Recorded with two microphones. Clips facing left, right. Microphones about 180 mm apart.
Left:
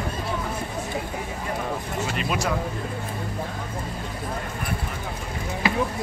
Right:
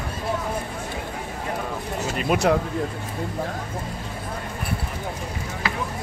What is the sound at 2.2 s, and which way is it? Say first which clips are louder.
Speech: right 8 dB; 55° right (ahead or behind).